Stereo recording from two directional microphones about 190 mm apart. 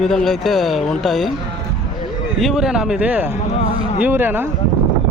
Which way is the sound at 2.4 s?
Centre (ahead or behind).